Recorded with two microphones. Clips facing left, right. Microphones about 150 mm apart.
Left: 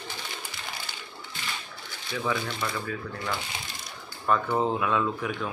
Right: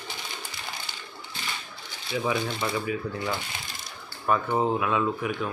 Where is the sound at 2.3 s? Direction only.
15° right (ahead or behind).